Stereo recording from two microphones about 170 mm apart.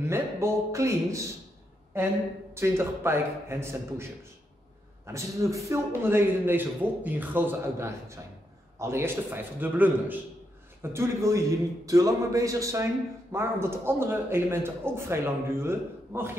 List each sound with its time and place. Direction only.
0.1 s a man's voice: 15° right (ahead or behind)
5.0 s a man's voice: 15° right (ahead or behind)